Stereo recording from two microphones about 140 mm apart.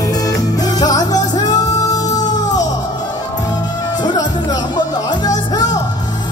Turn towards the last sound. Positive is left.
turn(degrees=30)  # may be behind; listen again after turning